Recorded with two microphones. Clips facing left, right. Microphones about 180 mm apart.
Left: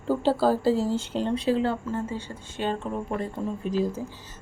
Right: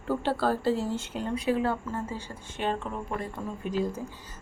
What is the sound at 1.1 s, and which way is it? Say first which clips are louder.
Speech: left 2 dB; 30° left (ahead or behind).